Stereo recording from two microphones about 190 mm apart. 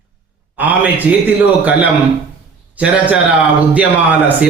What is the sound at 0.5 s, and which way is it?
A man's voice, 10° right (ahead or behind).